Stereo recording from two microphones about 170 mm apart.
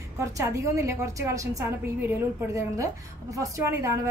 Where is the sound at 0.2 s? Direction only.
15° right (ahead or behind).